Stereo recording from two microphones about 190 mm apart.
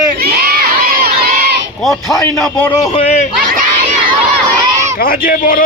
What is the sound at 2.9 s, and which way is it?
Speech, 35° left (ahead or behind).